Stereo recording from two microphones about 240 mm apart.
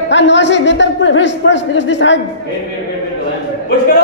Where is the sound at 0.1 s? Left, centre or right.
Left.